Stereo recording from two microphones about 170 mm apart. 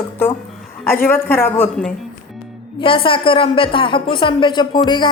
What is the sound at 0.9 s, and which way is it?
Speech, 15° left (ahead or behind).